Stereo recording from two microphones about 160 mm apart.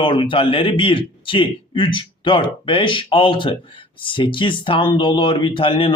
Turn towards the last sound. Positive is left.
turn(degrees=35)  # may be behind; listen again after turning